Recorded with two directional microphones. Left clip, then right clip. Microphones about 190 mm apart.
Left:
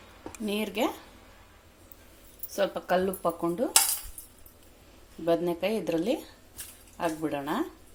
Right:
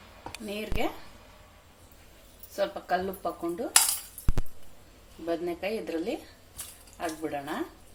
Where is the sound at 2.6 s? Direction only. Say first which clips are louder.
Left 2 dB; 40° left (ahead or behind).